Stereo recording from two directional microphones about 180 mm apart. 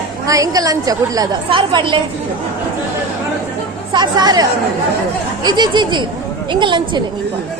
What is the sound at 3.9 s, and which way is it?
Speech, 25° right (ahead or behind).